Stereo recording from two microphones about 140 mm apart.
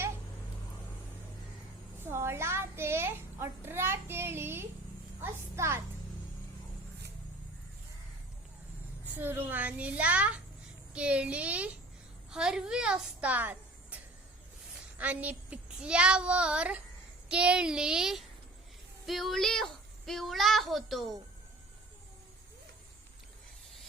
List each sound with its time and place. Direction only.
2.0 s a child's voice: 20° right (ahead or behind)
9.2 s a child's voice: 15° right (ahead or behind)